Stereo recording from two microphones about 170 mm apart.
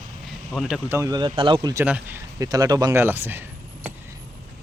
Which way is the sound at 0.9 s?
20° right (ahead or behind).